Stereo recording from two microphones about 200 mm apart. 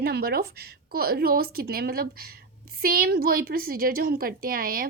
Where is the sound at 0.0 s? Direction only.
50° right (ahead or behind).